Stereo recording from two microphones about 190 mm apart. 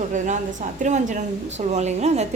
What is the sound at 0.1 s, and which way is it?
A woman's voice, 40° right (ahead or behind).